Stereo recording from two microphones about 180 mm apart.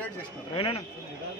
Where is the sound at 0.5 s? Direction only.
30° left (ahead or behind).